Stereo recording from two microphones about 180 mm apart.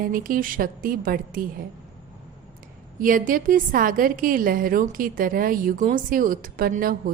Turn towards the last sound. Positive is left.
turn(degrees=-50)  # may be behind; listen again after turning